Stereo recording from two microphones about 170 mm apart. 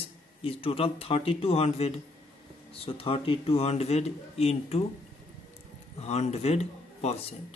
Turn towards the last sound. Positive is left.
turn(degrees=40)  # may be behind; listen again after turning